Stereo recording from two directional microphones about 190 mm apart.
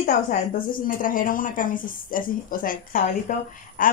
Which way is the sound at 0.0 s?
45° left (ahead or behind).